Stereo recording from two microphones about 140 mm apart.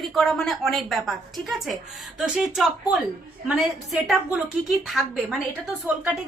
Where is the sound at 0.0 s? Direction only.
Centre (ahead or behind).